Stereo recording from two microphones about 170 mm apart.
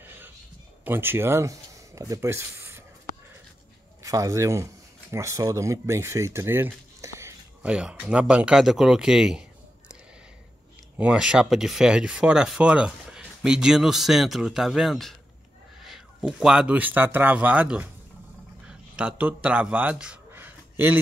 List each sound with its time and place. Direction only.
0.0 s a sound: 10° right (ahead or behind)
0.8 s speech: 15° right (ahead or behind)
4.0 s speech: 20° right (ahead or behind); by 9.5 s 5° right (ahead or behind)
11.0 s speech: 5° right (ahead or behind)